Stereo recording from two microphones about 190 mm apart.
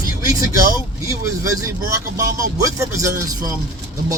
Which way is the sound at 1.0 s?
15° right (ahead or behind).